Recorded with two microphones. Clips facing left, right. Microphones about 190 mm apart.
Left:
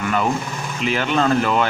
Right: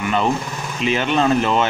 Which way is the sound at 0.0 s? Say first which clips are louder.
Right 1 dB; 20° right (ahead or behind).